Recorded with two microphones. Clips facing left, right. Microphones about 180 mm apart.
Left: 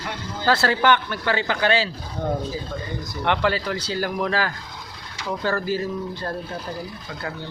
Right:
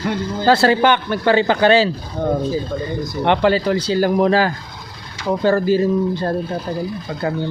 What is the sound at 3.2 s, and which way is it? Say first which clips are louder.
Speech: right 7 dB; 25° right (ahead or behind).